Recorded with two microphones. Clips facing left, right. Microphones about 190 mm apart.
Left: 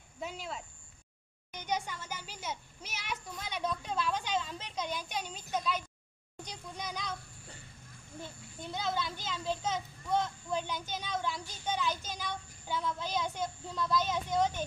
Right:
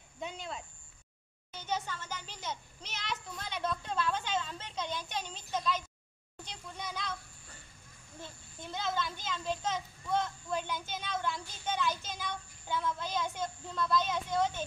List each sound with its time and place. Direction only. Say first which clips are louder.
0.2 s speech: even; 5° left (ahead or behind)
1.5 s a child's voice: left 1 dB; 15° left (ahead or behind)
8.7 s a child's voice: even; 15° left (ahead or behind)